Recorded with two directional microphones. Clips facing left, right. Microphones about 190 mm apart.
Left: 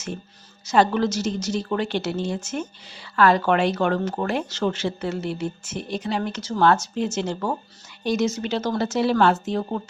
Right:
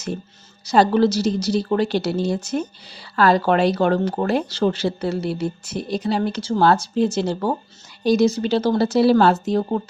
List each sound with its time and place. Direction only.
0.6 s speech: 35° right (ahead or behind)